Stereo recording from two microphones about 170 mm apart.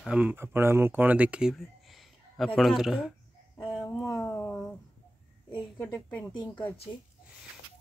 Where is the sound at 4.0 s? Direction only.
15° left (ahead or behind).